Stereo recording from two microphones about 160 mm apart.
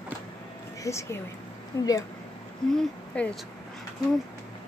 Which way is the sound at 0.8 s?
20° left (ahead or behind).